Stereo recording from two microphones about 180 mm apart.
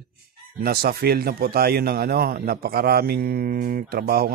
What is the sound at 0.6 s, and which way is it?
Speech, 55° right (ahead or behind).